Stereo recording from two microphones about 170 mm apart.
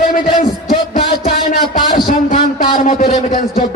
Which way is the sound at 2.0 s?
55° left (ahead or behind).